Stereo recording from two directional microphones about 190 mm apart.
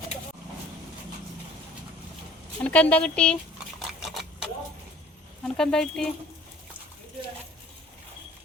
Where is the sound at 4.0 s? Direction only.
Centre (ahead or behind).